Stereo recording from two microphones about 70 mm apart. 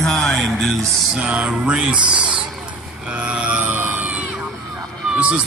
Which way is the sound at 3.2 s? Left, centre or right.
Centre.